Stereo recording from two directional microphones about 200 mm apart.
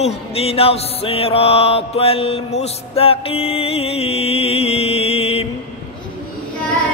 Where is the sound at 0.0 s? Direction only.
30° left (ahead or behind).